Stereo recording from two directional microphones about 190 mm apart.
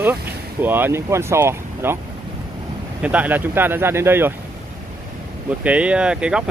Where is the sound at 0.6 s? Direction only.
10° right (ahead or behind).